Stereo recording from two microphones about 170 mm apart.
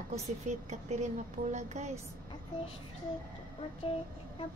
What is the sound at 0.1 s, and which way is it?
Speech, 40° right (ahead or behind).